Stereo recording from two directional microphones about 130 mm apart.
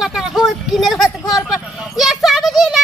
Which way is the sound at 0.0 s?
5° right (ahead or behind).